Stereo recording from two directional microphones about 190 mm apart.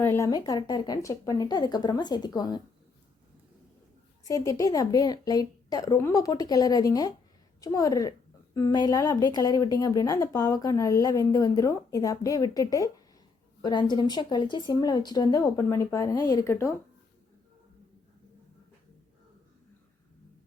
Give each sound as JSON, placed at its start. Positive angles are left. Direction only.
{"t": 0.0, "sound": "speech", "side_deg": 15}
{"t": 4.3, "sound": "speech", "side_deg": 20}